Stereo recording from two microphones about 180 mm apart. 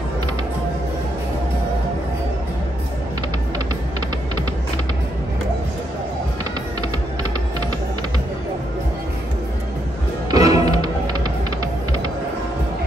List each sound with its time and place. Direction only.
10.3 s music: 20° right (ahead or behind)